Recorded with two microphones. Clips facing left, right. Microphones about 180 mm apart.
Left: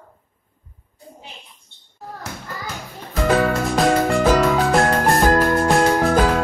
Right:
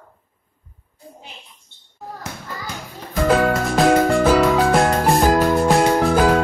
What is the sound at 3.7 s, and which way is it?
Music, centre (ahead or behind).